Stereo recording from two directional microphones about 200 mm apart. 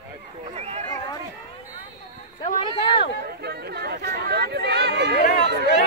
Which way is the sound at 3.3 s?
55° right (ahead or behind).